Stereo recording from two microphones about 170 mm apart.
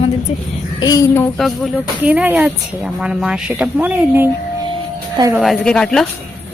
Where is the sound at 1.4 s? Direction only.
Centre (ahead or behind).